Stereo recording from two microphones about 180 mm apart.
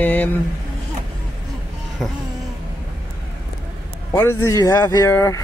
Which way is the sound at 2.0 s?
5° left (ahead or behind).